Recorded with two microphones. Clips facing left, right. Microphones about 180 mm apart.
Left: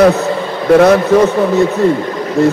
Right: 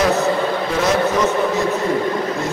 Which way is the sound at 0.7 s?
60° left (ahead or behind).